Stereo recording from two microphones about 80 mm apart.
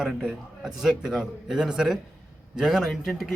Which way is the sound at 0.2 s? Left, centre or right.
Centre.